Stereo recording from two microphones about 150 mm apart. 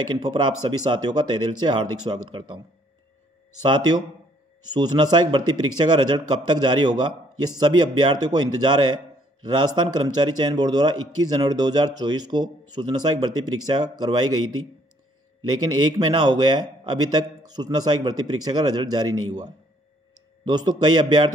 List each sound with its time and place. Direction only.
0.1 s speech: 30° right (ahead or behind)
3.6 s a man's voice: 30° right (ahead or behind)
16.3 s a man's voice: 30° right (ahead or behind)